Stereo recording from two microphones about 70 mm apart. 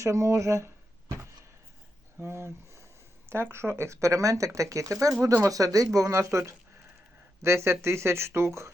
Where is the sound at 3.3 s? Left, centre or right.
Right.